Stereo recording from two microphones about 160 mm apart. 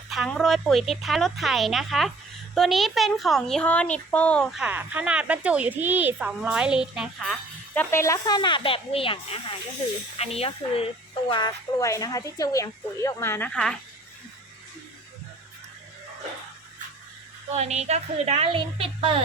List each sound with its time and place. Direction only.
0.1 s speech: centre (ahead or behind)
4.6 s speech: 10° right (ahead or behind); by 10.8 s 40° left (ahead or behind)
11.3 s speech: 30° left (ahead or behind); by 13.7 s 5° left (ahead or behind)
17.5 s a woman's voice: 45° right (ahead or behind)